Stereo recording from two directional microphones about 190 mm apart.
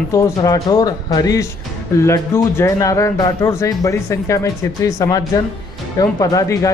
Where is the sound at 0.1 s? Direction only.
20° left (ahead or behind).